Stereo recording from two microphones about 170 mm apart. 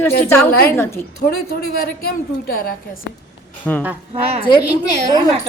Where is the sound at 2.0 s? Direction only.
60° left (ahead or behind).